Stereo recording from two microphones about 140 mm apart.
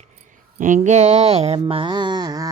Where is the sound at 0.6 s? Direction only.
60° right (ahead or behind); by 2.5 s 25° right (ahead or behind).